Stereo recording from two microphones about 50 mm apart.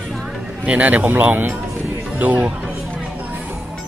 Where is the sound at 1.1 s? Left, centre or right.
Right.